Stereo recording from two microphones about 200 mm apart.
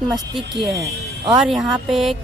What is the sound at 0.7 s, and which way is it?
Speech, 15° right (ahead or behind).